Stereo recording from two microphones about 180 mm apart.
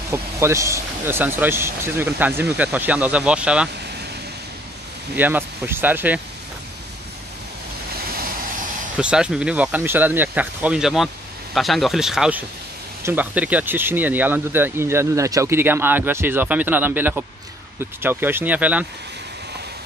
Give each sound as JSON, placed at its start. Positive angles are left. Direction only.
{"t": 0.1, "sound": "speech", "side_deg": -15}
{"t": 5.1, "sound": "speech", "side_deg": -10}
{"t": 8.0, "sound": "vehicle", "side_deg": -55}
{"t": 8.9, "sound": "speech", "side_deg": -5}